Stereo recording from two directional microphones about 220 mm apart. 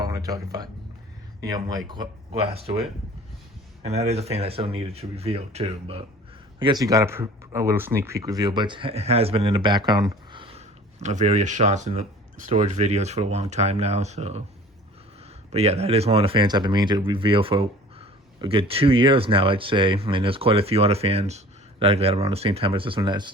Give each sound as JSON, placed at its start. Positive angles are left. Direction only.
{"t": 0.0, "sound": "speech", "side_deg": -15}
{"t": 3.8, "sound": "speech", "side_deg": -30}
{"t": 15.5, "sound": "speech", "side_deg": -30}